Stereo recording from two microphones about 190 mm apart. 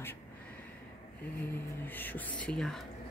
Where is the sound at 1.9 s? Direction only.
10° left (ahead or behind).